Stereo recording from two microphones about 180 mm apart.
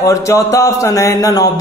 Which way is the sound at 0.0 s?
15° left (ahead or behind).